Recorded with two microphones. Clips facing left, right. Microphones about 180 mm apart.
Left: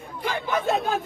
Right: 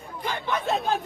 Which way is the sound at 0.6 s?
Centre (ahead or behind).